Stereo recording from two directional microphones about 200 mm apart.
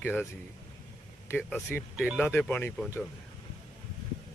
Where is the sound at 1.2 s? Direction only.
10° left (ahead or behind).